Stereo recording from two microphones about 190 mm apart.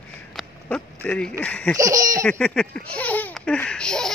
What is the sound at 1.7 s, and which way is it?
Laughter, 20° right (ahead or behind).